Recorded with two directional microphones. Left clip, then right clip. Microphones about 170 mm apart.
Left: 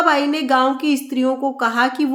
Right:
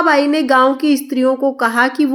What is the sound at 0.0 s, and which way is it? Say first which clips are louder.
Speech: right 4 dB; 20° right (ahead or behind).